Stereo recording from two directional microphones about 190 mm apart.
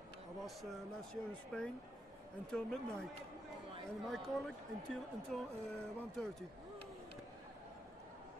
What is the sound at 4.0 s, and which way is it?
Speech, centre (ahead or behind).